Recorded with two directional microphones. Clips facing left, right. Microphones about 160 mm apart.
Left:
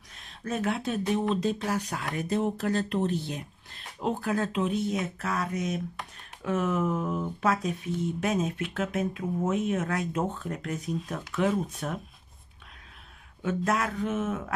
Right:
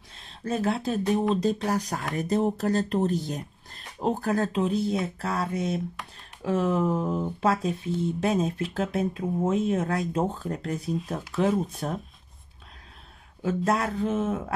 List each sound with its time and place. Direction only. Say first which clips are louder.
0.2 s speech: right 3 dB; 30° right (ahead or behind)
13.4 s speech: right 2 dB; 35° right (ahead or behind)